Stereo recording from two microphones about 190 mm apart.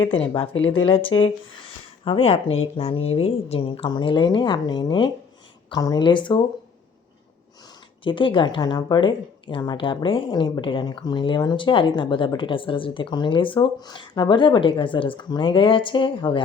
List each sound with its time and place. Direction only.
0.2 s speech: 30° left (ahead or behind)
8.0 s speech: 25° left (ahead or behind)